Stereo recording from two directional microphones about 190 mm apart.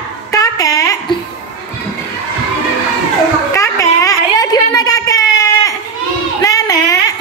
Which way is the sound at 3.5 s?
15° left (ahead or behind).